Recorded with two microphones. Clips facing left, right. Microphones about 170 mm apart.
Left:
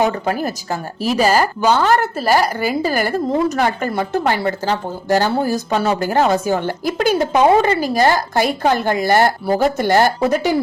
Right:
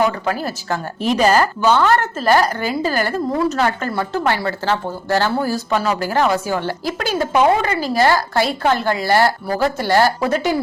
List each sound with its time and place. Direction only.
0.0 s a woman's voice: 30° left (ahead or behind)
0.3 s a woman's voice: 15° left (ahead or behind)